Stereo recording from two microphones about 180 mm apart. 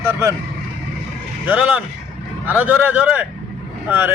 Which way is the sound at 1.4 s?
10° right (ahead or behind).